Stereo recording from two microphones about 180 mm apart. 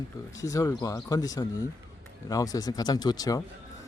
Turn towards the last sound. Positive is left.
turn(degrees=20)  # may be behind; listen again after turning